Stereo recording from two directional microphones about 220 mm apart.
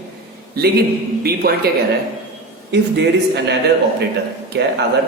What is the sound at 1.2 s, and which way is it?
Speech, 45° right (ahead or behind).